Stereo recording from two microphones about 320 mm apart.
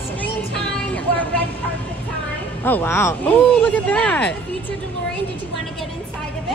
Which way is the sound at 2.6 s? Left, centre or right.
Centre.